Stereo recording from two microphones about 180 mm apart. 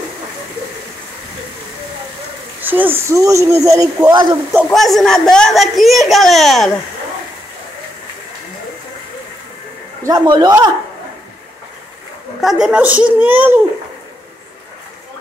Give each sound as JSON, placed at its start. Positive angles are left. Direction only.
{"t": 2.6, "sound": "speech", "side_deg": -10}
{"t": 4.7, "sound": "a man's voice", "side_deg": 0}
{"t": 10.0, "sound": "speech", "side_deg": -20}
{"t": 12.4, "sound": "speech", "side_deg": 0}